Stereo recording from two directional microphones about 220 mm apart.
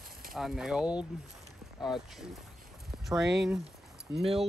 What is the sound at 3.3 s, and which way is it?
Speech, centre (ahead or behind).